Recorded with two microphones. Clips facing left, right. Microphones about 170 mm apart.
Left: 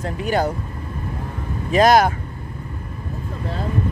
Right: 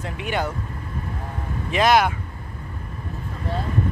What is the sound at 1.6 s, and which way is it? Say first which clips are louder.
Speech: left 4 dB; 40° left (ahead or behind).